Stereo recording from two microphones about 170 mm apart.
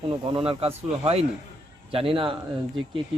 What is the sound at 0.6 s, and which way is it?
Speech, 35° right (ahead or behind).